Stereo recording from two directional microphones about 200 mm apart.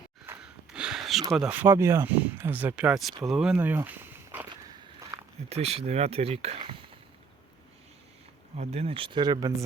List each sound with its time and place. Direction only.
0.3 s a sound: 5° right (ahead or behind)
1.5 s speech: 10° right (ahead or behind)
4.7 s walk: 15° right (ahead or behind)
5.5 s speech: 30° right (ahead or behind)
8.7 s speech: 30° right (ahead or behind)